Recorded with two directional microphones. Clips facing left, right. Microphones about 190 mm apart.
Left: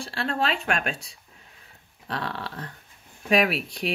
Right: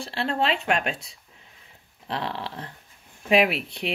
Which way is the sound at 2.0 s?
25° right (ahead or behind).